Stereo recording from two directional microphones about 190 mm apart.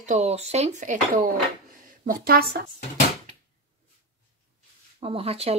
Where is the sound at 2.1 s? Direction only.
55° right (ahead or behind).